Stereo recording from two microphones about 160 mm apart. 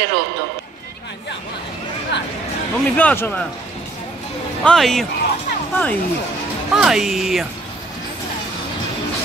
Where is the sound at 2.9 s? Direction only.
10° left (ahead or behind).